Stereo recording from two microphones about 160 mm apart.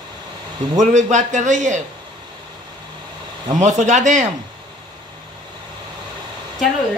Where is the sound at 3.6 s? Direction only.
45° right (ahead or behind).